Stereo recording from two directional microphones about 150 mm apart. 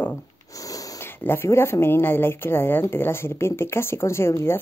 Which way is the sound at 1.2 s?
15° left (ahead or behind).